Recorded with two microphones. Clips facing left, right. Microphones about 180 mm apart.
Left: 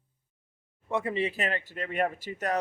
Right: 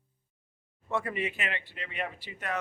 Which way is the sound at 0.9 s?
20° left (ahead or behind).